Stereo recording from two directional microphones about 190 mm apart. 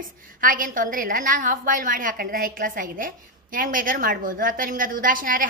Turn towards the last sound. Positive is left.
turn(degrees=-45)  # may be behind; listen again after turning